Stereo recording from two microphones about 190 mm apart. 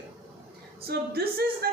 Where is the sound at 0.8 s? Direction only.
55° right (ahead or behind).